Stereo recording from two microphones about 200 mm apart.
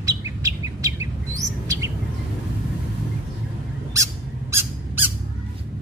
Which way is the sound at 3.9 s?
15° right (ahead or behind).